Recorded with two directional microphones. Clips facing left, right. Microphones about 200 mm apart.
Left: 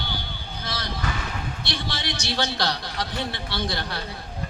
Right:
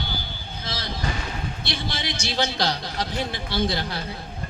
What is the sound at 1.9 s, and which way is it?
A man's voice, 20° right (ahead or behind).